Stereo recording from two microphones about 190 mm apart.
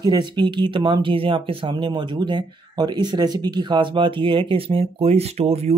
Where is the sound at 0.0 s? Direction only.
20° right (ahead or behind).